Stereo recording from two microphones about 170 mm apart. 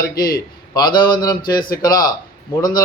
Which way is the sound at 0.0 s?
20° left (ahead or behind).